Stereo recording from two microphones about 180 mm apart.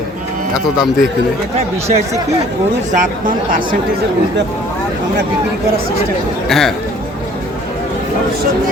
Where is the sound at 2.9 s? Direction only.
50° right (ahead or behind).